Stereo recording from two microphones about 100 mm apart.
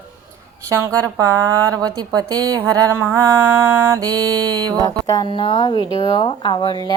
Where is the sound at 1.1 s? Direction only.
40° right (ahead or behind).